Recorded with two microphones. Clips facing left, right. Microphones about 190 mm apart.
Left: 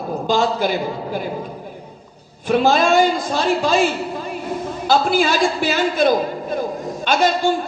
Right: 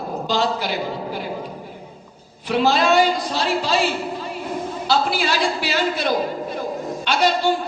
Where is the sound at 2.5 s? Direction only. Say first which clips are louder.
Left 2 dB; 50° left (ahead or behind).